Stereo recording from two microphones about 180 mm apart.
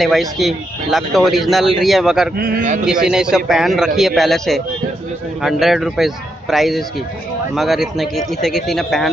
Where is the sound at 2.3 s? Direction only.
55° right (ahead or behind).